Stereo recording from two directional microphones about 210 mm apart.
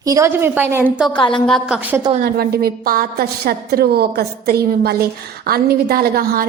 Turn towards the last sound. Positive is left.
turn(degrees=-45)  # may be behind; listen again after turning